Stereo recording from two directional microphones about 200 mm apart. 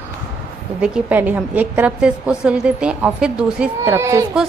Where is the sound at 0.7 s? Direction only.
5° right (ahead or behind).